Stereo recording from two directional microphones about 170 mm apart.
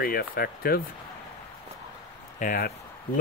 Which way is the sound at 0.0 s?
60° left (ahead or behind).